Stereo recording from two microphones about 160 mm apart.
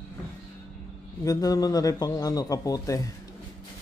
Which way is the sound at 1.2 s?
20° left (ahead or behind).